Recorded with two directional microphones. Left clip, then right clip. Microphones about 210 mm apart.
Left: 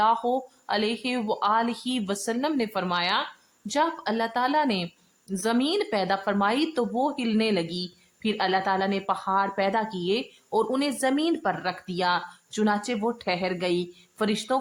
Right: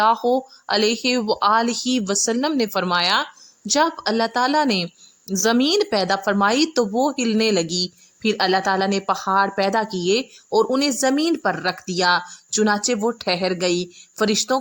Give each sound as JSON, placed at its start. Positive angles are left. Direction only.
{"t": 0.0, "sound": "speech", "side_deg": -30}